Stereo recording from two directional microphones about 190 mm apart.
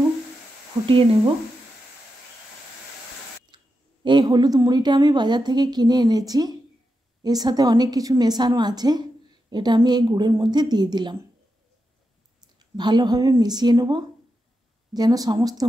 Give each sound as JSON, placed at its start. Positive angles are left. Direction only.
{"t": 0.8, "sound": "a woman's voice", "side_deg": -30}
{"t": 3.5, "sound": "a woman's voice", "side_deg": -25}
{"t": 12.7, "sound": "a woman's voice", "side_deg": -20}